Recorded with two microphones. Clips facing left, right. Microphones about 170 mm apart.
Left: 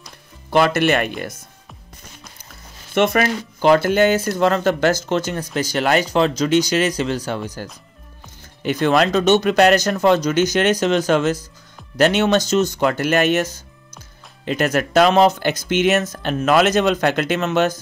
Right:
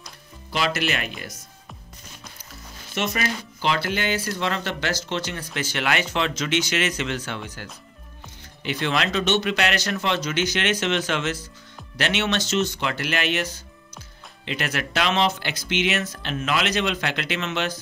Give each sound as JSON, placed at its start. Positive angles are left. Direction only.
{"t": 0.5, "sound": "speech", "side_deg": 55}
{"t": 2.9, "sound": "speech", "side_deg": 55}
{"t": 8.6, "sound": "speech", "side_deg": 45}